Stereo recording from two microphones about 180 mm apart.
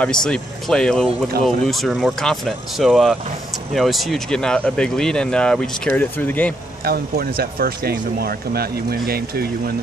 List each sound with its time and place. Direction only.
0.0 s speech: 5° left (ahead or behind)
6.8 s speech: 60° right (ahead or behind)